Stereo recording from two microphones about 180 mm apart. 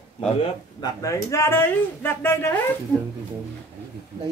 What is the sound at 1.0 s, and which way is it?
Speech, 15° left (ahead or behind).